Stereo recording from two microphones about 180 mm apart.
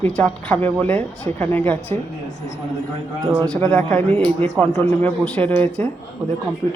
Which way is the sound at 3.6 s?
5° left (ahead or behind).